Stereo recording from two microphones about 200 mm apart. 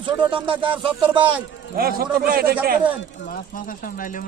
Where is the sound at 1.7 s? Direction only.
50° right (ahead or behind).